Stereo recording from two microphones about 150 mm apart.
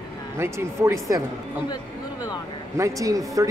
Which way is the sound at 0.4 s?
15° right (ahead or behind).